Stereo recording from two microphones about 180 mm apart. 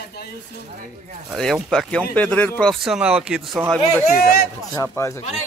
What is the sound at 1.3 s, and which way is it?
Speech, centre (ahead or behind).